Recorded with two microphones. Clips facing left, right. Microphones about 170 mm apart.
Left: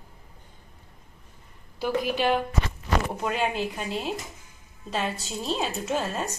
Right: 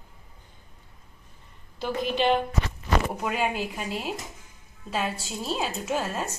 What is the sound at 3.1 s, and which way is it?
A woman's voice, 5° right (ahead or behind).